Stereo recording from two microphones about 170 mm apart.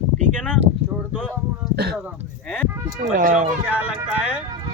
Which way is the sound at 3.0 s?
50° right (ahead or behind).